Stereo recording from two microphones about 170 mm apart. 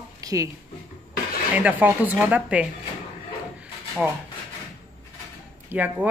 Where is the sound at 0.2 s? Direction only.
20° right (ahead or behind).